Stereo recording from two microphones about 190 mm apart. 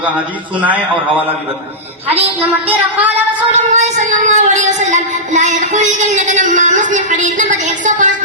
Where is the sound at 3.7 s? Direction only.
40° right (ahead or behind).